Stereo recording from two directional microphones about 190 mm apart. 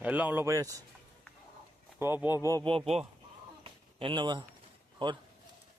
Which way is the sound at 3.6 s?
25° right (ahead or behind).